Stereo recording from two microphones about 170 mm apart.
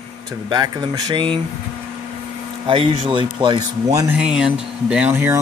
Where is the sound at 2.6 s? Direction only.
30° right (ahead or behind).